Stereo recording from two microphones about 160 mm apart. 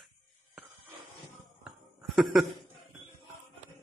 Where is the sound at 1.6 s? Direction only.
Centre (ahead or behind).